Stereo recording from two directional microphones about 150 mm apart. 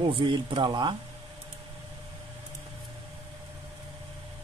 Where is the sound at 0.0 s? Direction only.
30° right (ahead or behind).